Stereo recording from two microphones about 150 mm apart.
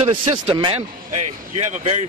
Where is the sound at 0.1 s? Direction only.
35° right (ahead or behind).